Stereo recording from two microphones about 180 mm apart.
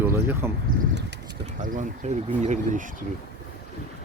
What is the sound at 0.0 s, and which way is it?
Speech, 10° right (ahead or behind).